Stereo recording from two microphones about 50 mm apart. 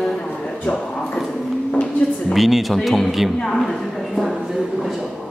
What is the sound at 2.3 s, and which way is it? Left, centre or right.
Speech, centre.